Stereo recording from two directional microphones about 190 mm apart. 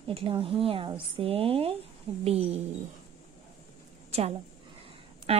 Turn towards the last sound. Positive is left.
turn(degrees=-30)  # may be behind; listen again after turning